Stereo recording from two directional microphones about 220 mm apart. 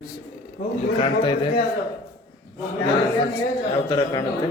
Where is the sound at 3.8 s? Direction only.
20° left (ahead or behind).